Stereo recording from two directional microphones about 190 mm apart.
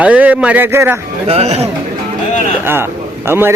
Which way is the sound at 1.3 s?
35° right (ahead or behind).